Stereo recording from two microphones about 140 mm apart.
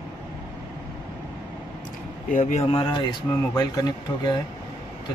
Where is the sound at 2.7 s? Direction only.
30° left (ahead or behind).